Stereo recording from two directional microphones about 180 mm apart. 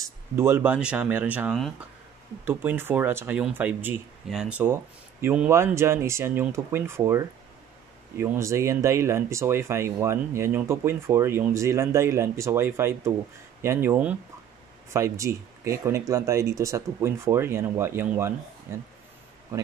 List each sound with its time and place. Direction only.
0.4 s speech: 15° right (ahead or behind)